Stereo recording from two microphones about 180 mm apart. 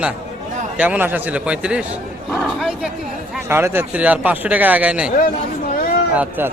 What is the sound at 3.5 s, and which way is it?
Speech, 15° right (ahead or behind).